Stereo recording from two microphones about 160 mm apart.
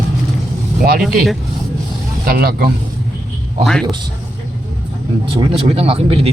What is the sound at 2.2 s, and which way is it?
Speech, 70° right (ahead or behind).